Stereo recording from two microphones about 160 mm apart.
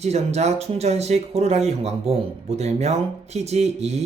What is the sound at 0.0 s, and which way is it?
Speech, 45° right (ahead or behind).